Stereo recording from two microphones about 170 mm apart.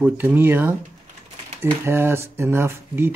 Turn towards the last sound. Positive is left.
turn(degrees=-15)  # may be behind; listen again after turning